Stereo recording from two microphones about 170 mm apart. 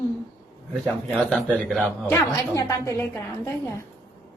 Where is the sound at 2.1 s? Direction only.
20° left (ahead or behind).